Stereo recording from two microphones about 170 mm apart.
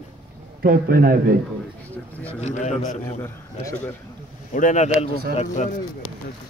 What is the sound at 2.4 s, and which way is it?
Speech, 40° left (ahead or behind).